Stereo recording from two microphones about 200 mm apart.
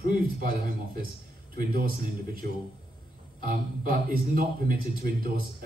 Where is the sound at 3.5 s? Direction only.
45° right (ahead or behind).